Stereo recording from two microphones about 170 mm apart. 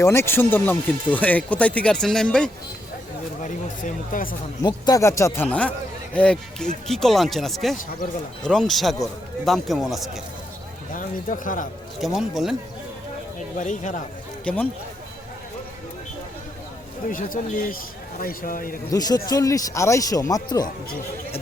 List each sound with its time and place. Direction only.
0.0 s speech: 15° left (ahead or behind)
3.4 s speech: 50° left (ahead or behind)
4.6 s speech: 20° left (ahead or behind); by 10.1 s centre (ahead or behind)
10.9 s speech: 50° left (ahead or behind)
11.9 s speech: centre (ahead or behind)
13.6 s speech: 50° left (ahead or behind)
14.4 s speech: 10° left (ahead or behind)
17.1 s speech: 55° left (ahead or behind)
18.9 s speech: 20° left (ahead or behind)